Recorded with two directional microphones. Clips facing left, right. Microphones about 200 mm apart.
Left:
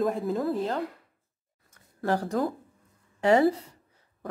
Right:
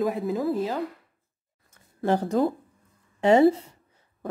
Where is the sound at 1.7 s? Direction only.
20° right (ahead or behind).